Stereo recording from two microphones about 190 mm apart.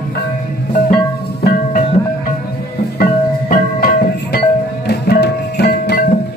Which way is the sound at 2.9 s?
50° left (ahead or behind).